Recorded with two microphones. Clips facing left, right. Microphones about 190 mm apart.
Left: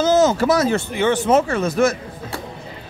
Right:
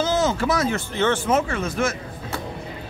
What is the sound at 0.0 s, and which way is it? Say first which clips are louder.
Speech: left 6 dB; 40° left (ahead or behind).